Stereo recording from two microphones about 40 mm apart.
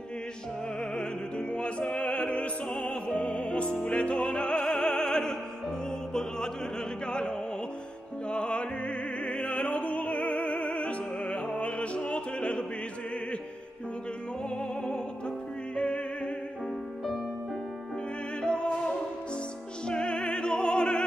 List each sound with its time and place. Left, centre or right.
1.5 s opera: left
2.9 s music: left; by 6.5 s centre
7.1 s opera: left
8.3 s music: left
11.3 s music: left
11.6 s opera: left
14.6 s music: left
18.4 s music: left
19.9 s opera: left